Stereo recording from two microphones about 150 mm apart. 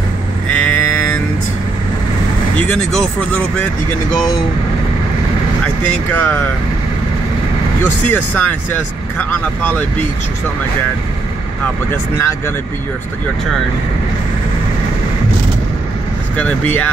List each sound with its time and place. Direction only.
0.5 s livestock: 10° left (ahead or behind)
2.6 s speech: 10° left (ahead or behind)
6.1 s speech: 15° left (ahead or behind)
7.8 s speech: 15° left (ahead or behind)
11.6 s speech: 15° left (ahead or behind)
16.3 s speech: 10° left (ahead or behind)